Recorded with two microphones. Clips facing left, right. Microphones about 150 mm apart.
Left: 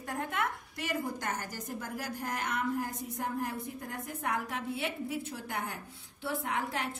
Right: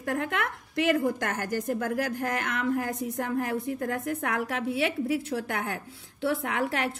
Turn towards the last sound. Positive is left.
turn(degrees=-85)